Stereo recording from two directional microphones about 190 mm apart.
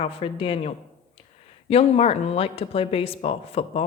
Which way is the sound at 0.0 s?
30° left (ahead or behind).